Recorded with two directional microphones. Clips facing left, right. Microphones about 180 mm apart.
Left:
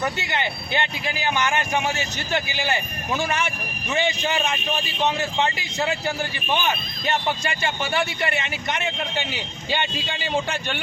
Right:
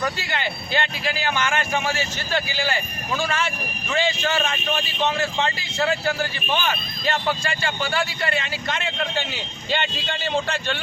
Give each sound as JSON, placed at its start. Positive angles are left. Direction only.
{"t": 0.0, "sound": "speech", "side_deg": 20}